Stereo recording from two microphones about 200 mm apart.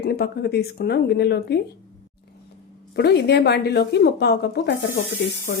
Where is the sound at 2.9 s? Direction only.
55° left (ahead or behind).